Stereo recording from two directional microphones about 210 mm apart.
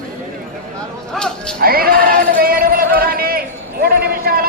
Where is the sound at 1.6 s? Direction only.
45° right (ahead or behind).